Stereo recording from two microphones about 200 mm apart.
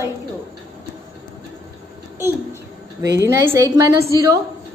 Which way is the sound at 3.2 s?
15° right (ahead or behind).